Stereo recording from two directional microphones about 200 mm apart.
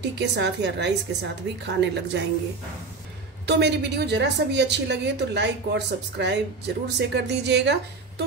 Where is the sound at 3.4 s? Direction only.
55° right (ahead or behind).